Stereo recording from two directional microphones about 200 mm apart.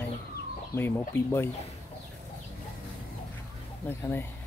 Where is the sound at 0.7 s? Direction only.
10° left (ahead or behind).